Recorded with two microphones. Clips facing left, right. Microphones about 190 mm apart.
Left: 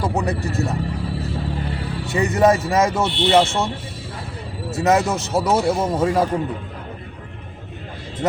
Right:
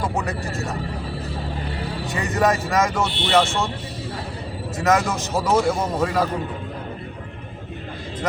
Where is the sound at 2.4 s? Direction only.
30° left (ahead or behind).